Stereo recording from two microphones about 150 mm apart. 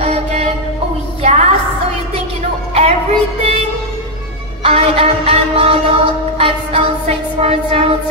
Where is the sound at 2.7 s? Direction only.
45° right (ahead or behind).